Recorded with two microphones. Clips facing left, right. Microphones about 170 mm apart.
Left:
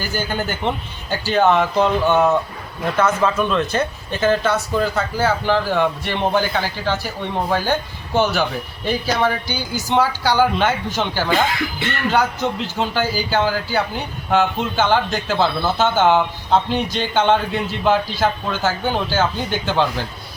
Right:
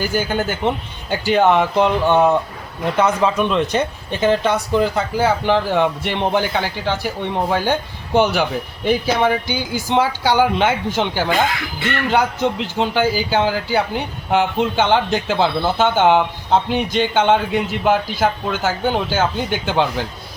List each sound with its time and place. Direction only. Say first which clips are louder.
0.0 s speech: right 4 dB; 10° right (ahead or behind)